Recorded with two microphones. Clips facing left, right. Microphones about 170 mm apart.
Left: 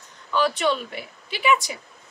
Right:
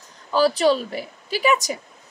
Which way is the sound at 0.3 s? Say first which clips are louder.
Right 5 dB; 35° right (ahead or behind).